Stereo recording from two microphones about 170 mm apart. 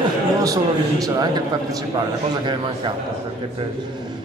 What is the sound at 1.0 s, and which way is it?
Speech, 25° right (ahead or behind).